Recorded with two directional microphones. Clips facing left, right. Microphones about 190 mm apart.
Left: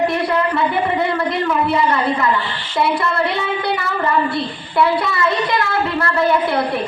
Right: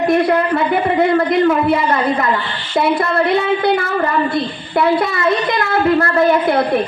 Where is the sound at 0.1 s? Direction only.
50° right (ahead or behind).